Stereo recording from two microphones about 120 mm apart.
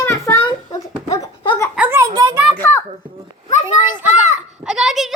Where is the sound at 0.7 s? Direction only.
30° left (ahead or behind).